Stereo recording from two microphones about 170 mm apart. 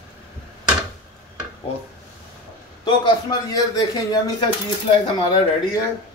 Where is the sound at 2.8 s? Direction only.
25° left (ahead or behind).